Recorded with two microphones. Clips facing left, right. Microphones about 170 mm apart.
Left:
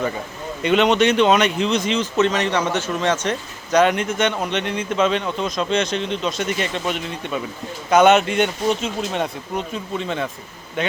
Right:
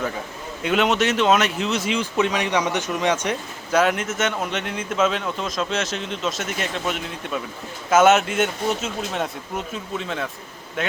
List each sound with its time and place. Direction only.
0.6 s speech: 5° right (ahead or behind)